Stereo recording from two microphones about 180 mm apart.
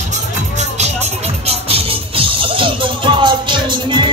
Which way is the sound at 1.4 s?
35° right (ahead or behind).